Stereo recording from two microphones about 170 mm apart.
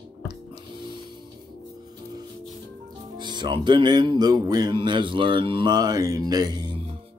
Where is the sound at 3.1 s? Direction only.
25° right (ahead or behind).